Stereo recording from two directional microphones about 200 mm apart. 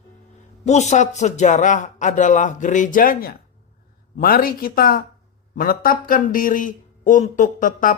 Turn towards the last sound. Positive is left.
turn(degrees=40)  # may be behind; listen again after turning